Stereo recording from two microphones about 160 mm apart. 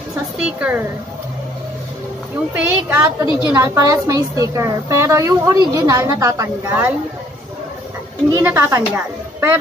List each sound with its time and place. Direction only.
0.4 s a woman's voice: 10° right (ahead or behind)
2.5 s a woman's voice: 10° right (ahead or behind)
8.5 s a woman's voice: 15° right (ahead or behind)